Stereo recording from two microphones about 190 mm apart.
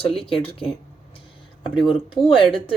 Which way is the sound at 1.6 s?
5° right (ahead or behind).